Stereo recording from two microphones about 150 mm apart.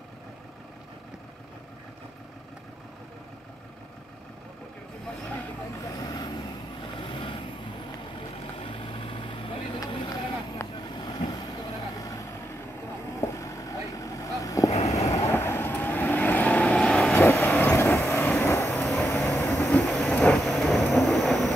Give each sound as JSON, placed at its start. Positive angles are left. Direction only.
{"t": 5.9, "sound": "vehicle", "side_deg": 25}
{"t": 8.6, "sound": "vehicle", "side_deg": 35}
{"t": 13.2, "sound": "vehicle", "side_deg": 20}
{"t": 14.7, "sound": "vehicle", "side_deg": 45}
{"t": 15.0, "sound": "vehicle", "side_deg": 20}
{"t": 19.8, "sound": "vehicle", "side_deg": 5}
{"t": 20.9, "sound": "train", "side_deg": 0}